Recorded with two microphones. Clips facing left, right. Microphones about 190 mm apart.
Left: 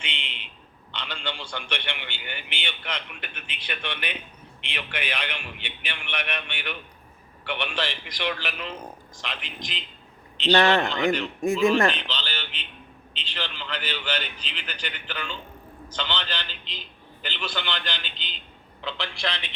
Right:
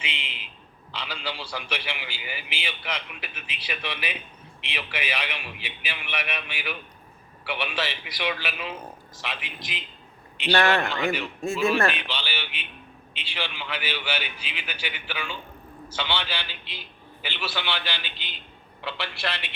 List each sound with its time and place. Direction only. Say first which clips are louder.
0.0 s a man's voice: right 1 dB; 5° right (ahead or behind)
10.5 s a man's voice: left 2 dB; 20° left (ahead or behind)
11.9 s a man's voice: left 1 dB; 10° right (ahead or behind)